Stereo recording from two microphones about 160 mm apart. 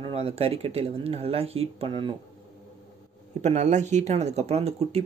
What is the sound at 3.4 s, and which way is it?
Speech, 45° right (ahead or behind).